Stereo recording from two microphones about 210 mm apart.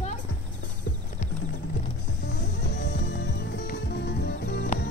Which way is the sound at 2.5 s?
55° left (ahead or behind).